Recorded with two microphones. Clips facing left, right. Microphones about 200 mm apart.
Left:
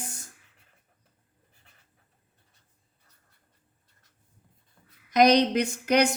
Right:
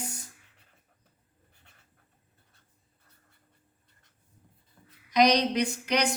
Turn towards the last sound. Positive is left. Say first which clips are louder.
# left 4 dB
turn(degrees=50)  # may be behind; listen again after turning